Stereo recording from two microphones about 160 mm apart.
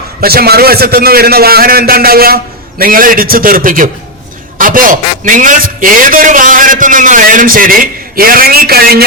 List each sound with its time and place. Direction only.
0.2 s a man's voice: 70° right (ahead or behind)